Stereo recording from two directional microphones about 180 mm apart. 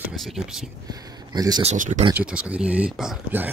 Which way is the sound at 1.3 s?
20° right (ahead or behind).